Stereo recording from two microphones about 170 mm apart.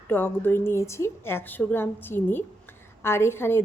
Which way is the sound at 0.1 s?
10° left (ahead or behind).